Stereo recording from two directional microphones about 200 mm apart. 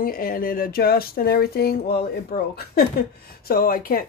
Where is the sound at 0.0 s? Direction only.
45° left (ahead or behind).